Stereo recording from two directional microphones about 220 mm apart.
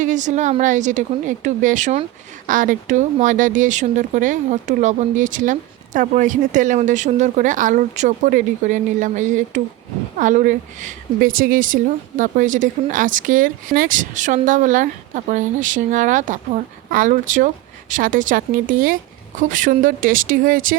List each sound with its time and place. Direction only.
0.0 s speech: 35° right (ahead or behind)